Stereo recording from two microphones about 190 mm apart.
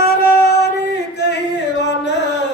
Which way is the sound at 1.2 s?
65° left (ahead or behind).